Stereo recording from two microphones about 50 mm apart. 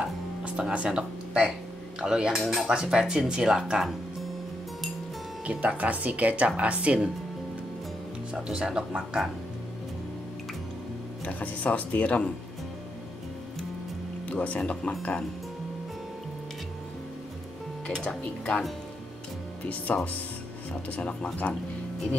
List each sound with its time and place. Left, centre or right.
0.4 s speech: right
5.5 s speech: right
8.3 s speech: centre
11.2 s speech: left
14.3 s speech: left
14.7 s speech: centre
18.0 s speech: left
19.9 s speech: left